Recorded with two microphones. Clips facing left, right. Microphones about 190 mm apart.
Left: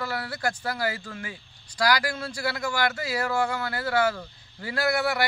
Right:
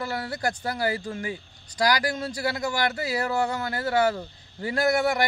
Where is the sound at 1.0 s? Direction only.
25° right (ahead or behind).